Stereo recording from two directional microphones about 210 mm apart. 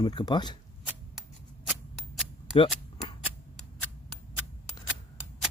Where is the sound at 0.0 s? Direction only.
20° left (ahead or behind).